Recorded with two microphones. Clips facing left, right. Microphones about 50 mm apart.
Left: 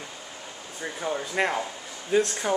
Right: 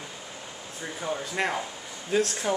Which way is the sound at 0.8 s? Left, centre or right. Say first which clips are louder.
Left 2 dB; centre.